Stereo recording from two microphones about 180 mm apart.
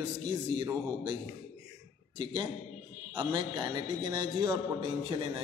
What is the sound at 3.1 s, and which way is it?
A man's voice, 20° right (ahead or behind).